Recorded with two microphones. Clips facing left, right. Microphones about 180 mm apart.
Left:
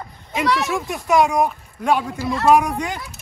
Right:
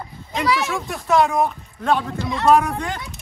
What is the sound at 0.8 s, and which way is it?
Speech, 15° left (ahead or behind).